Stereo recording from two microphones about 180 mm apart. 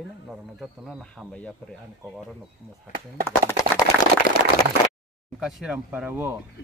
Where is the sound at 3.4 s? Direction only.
15° left (ahead or behind).